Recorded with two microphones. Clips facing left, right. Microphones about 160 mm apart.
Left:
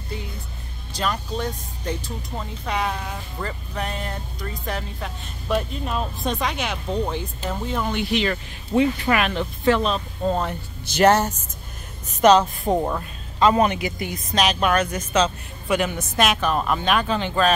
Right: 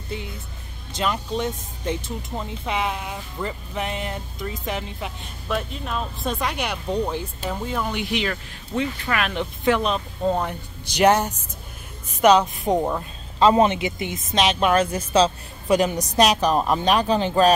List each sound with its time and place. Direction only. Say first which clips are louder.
0.9 s speech: right 1 dB; 20° right (ahead or behind)
5.5 s speech: left 3 dB; centre (ahead or behind)
6.3 s speech: even; 10° right (ahead or behind)
8.7 s speech: left 6 dB; 15° left (ahead or behind)
9.3 s speech: left 1 dB; 15° right (ahead or behind)
13.4 s speech: right 2 dB; 25° right (ahead or behind)